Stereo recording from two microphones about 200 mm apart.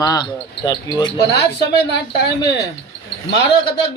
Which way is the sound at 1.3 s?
55° left (ahead or behind).